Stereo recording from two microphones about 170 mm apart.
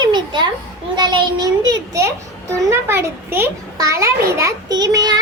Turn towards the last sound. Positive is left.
turn(degrees=-25)  # may be behind; listen again after turning